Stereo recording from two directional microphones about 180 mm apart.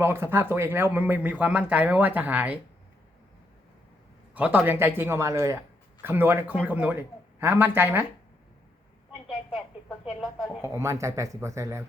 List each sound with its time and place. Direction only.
0.0 s speech: 15° right (ahead or behind)
4.4 s speech: 10° right (ahead or behind)
10.6 s speech: 15° right (ahead or behind)